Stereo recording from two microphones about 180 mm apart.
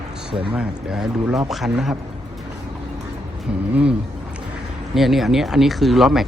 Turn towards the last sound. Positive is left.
turn(degrees=0)  # may be behind; listen again after turning